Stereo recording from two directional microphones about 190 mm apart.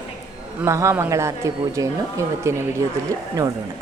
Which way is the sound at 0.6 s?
15° right (ahead or behind).